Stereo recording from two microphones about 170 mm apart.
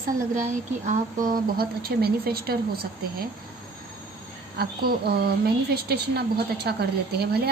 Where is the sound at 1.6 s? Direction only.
65° right (ahead or behind).